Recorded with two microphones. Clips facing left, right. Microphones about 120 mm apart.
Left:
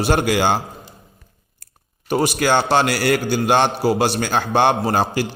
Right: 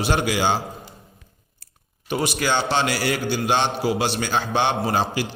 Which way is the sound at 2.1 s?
45° left (ahead or behind).